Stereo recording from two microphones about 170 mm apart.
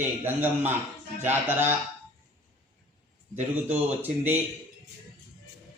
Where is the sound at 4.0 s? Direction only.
10° right (ahead or behind).